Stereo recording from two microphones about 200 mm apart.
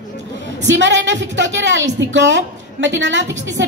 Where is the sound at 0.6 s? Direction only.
65° right (ahead or behind).